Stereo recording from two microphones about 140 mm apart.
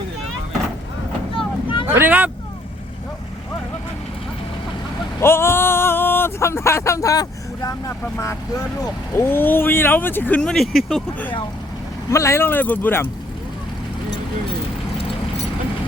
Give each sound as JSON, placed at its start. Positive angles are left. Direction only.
{"t": 1.9, "sound": "vehicle", "side_deg": -15}
{"t": 5.2, "sound": "speech", "side_deg": 15}
{"t": 12.1, "sound": "speech", "side_deg": 20}